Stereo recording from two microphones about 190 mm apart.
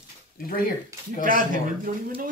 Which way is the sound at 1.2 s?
45° right (ahead or behind).